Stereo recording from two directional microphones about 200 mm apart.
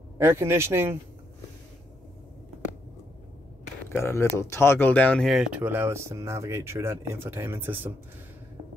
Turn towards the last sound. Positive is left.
turn(degrees=-10)  # may be behind; listen again after turning